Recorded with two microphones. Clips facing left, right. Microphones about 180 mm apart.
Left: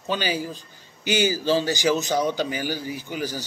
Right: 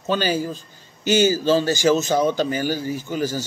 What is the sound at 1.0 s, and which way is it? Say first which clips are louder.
A man's voice: right 5 dB; 15° left (ahead or behind).